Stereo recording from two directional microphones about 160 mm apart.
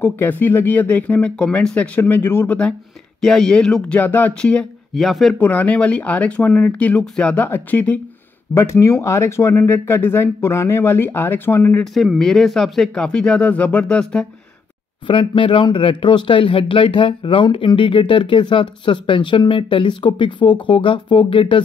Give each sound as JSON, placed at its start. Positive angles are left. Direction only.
{"t": 0.0, "sound": "speech", "side_deg": 10}
{"t": 5.4, "sound": "speech", "side_deg": 10}
{"t": 11.8, "sound": "speech", "side_deg": 0}
{"t": 15.0, "sound": "speech", "side_deg": 30}